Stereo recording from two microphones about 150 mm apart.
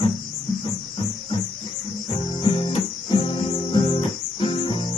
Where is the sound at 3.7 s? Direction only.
35° left (ahead or behind).